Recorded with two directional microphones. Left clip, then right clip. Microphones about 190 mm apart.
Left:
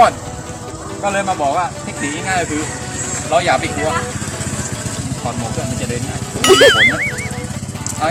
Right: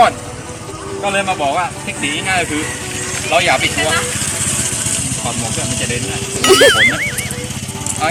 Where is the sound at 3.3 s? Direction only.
Centre (ahead or behind).